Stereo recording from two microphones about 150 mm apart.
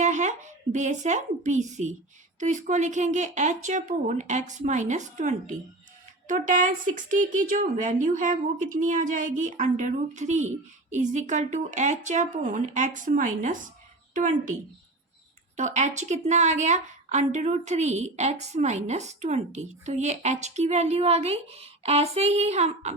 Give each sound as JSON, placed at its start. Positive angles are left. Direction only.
{"t": 0.0, "sound": "a woman's voice", "side_deg": -50}
{"t": 15.5, "sound": "a woman's voice", "side_deg": -50}